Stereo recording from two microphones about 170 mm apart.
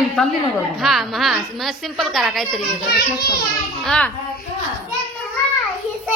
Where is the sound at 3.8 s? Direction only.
5° left (ahead or behind).